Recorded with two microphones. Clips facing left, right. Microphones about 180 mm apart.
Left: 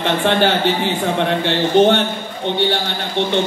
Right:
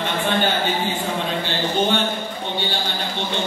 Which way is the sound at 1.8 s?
70° left (ahead or behind).